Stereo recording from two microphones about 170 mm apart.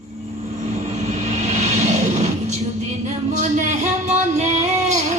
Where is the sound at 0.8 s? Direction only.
45° right (ahead or behind).